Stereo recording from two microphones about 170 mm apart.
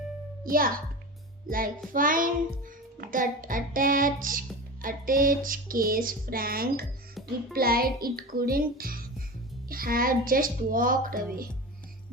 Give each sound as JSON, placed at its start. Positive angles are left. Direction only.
{"t": 1.5, "sound": "child singing", "side_deg": -55}